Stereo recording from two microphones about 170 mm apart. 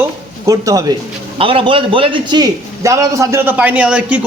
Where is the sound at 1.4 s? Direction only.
30° right (ahead or behind).